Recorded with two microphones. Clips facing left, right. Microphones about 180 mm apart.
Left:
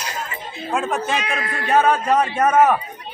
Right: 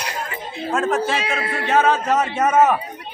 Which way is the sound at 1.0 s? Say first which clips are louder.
Right 2 dB; 30° right (ahead or behind).